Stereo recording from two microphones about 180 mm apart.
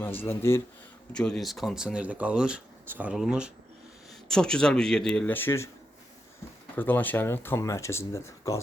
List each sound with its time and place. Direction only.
0.0 s speech: 10° left (ahead or behind)
6.7 s speech: 10° left (ahead or behind)